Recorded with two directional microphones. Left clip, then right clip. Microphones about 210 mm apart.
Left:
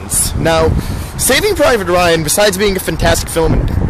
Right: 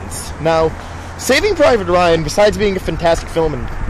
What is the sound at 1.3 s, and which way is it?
Speech, 5° left (ahead or behind).